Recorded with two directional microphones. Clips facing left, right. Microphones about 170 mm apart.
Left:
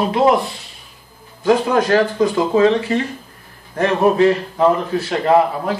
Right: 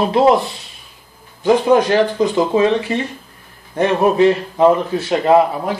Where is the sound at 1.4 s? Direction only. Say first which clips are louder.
Right 2 dB; 20° right (ahead or behind).